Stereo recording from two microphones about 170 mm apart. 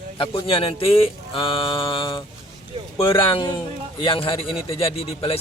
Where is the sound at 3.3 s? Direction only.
30° left (ahead or behind).